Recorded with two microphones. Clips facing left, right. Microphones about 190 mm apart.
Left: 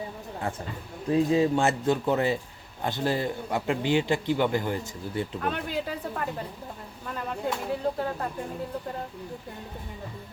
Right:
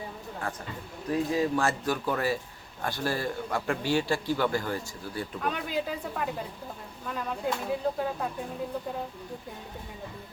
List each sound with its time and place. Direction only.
1.1 s a man's voice: 25° left (ahead or behind)
5.4 s speech: 5° right (ahead or behind)